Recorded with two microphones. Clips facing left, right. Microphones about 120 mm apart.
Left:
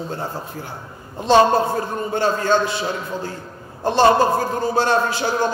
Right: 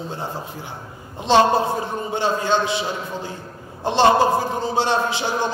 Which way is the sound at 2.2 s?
20° right (ahead or behind).